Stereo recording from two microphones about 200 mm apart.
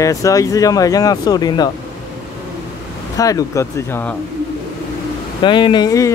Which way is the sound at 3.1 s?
15° left (ahead or behind).